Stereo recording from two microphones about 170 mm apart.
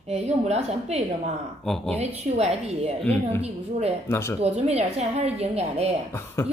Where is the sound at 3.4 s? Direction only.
40° right (ahead or behind).